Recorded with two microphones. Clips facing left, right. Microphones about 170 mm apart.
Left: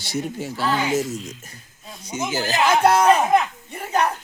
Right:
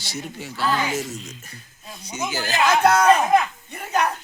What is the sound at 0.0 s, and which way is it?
Speech, 55° left (ahead or behind).